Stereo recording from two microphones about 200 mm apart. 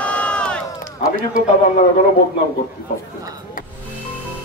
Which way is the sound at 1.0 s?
55° right (ahead or behind).